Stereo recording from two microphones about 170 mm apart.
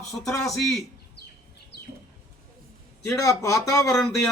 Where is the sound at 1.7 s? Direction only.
75° left (ahead or behind).